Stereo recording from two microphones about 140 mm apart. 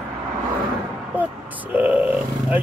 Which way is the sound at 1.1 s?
10° right (ahead or behind).